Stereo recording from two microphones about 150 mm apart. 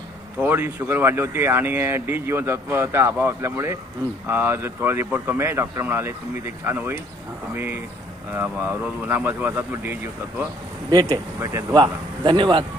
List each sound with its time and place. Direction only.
0.4 s speech: 15° right (ahead or behind)
10.8 s speech: 30° right (ahead or behind)
11.3 s speech: 15° right (ahead or behind)
11.8 s speech: 35° right (ahead or behind)